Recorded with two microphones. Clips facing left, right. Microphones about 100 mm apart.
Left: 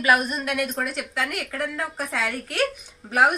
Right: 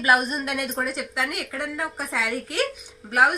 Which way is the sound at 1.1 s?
15° right (ahead or behind).